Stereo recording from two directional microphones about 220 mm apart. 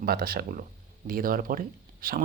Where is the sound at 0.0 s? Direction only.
40° right (ahead or behind).